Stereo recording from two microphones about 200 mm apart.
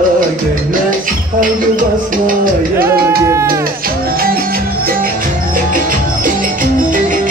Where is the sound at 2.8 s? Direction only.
45° right (ahead or behind).